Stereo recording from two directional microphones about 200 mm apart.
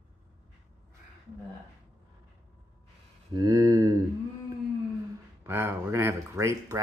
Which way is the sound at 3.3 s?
20° right (ahead or behind).